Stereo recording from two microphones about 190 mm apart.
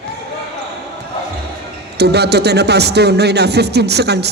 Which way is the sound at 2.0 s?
60° right (ahead or behind).